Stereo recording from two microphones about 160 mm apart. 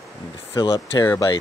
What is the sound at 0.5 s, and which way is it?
Speech, 25° left (ahead or behind).